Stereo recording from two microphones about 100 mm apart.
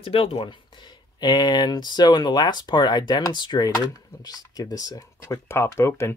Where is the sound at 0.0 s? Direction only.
70° left (ahead or behind).